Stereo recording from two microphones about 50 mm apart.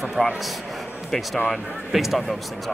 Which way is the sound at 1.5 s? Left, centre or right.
Centre.